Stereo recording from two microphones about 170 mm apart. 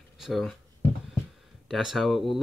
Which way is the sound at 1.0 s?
Centre (ahead or behind).